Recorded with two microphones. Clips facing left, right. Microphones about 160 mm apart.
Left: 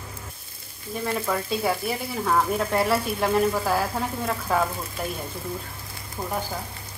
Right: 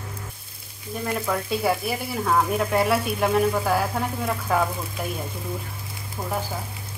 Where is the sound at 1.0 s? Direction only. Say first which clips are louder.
Even; centre (ahead or behind).